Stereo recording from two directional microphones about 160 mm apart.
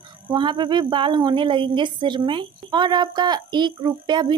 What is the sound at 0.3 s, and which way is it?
A woman's voice, 30° right (ahead or behind).